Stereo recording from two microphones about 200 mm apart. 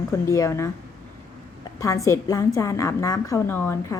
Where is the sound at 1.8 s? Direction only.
15° left (ahead or behind).